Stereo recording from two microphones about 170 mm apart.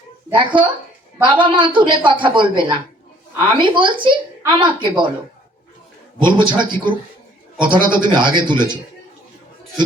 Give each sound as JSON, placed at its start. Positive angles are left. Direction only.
{"t": 0.3, "sound": "a woman's voice", "side_deg": -30}
{"t": 6.4, "sound": "a woman's voice", "side_deg": -25}